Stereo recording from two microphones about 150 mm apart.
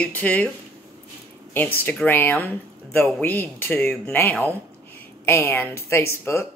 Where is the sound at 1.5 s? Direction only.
10° left (ahead or behind).